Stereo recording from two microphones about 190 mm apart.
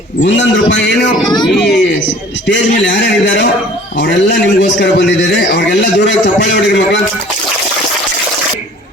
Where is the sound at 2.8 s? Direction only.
70° left (ahead or behind).